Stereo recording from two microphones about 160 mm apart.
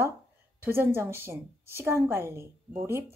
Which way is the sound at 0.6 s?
15° right (ahead or behind).